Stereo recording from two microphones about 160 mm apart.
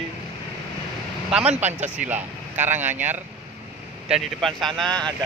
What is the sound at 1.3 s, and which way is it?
Speech, 5° right (ahead or behind).